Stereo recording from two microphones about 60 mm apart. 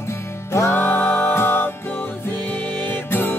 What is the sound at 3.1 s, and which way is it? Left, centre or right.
Music, left.